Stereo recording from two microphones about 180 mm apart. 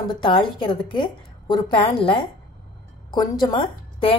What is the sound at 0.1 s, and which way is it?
A woman's voice, 25° left (ahead or behind).